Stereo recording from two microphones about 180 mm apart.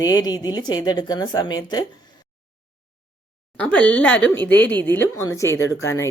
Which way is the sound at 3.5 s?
5° left (ahead or behind).